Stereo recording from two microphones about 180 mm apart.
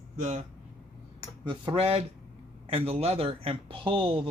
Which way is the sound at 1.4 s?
25° right (ahead or behind).